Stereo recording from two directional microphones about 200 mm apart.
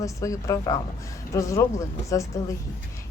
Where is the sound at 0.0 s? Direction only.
15° left (ahead or behind).